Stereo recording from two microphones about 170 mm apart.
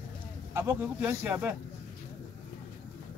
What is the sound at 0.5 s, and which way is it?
Speech, 10° right (ahead or behind).